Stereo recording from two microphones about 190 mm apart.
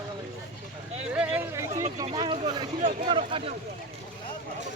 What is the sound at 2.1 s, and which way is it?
Vehicle, 30° right (ahead or behind).